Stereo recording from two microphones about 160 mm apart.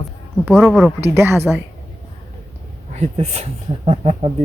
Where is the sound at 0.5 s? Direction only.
Centre (ahead or behind).